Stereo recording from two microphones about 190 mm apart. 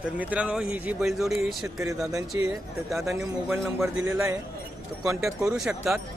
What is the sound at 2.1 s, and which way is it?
Speech, 15° right (ahead or behind).